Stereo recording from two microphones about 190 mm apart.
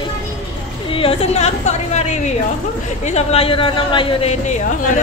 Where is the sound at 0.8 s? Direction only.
30° left (ahead or behind).